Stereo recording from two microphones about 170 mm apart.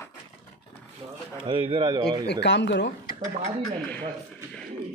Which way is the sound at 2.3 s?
90° left.